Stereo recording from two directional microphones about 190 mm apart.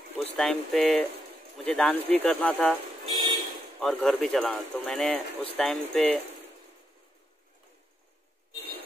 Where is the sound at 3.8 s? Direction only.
5° left (ahead or behind).